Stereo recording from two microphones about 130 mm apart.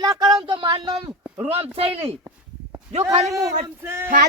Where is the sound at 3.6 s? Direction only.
20° right (ahead or behind).